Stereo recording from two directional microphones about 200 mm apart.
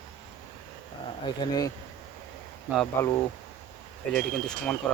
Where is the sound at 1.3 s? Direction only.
20° left (ahead or behind).